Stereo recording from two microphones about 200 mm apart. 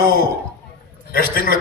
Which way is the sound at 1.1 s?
45° left (ahead or behind).